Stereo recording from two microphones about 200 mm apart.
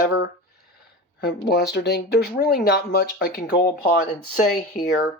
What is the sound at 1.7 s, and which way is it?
Speech, 55° left (ahead or behind).